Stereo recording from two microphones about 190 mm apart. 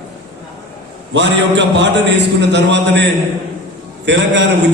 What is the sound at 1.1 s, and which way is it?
A man's voice, 65° right (ahead or behind).